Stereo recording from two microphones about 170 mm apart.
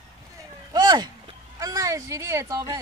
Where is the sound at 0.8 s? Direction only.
25° right (ahead or behind).